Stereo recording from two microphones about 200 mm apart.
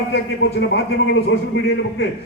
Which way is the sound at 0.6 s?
60° left (ahead or behind).